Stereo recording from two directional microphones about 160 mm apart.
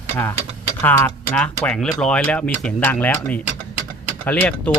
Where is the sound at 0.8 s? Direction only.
10° left (ahead or behind).